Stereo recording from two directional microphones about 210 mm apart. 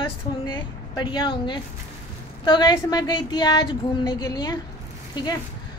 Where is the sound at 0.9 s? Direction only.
20° left (ahead or behind).